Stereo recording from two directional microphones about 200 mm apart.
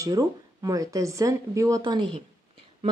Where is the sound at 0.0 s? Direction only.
15° right (ahead or behind).